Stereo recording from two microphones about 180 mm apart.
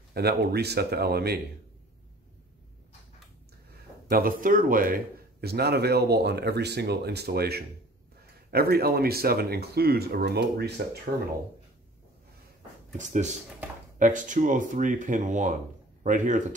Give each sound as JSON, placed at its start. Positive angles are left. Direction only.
{"t": 0.1, "sound": "speech", "side_deg": -60}
{"t": 4.1, "sound": "speech", "side_deg": -50}
{"t": 12.9, "sound": "speech", "side_deg": -45}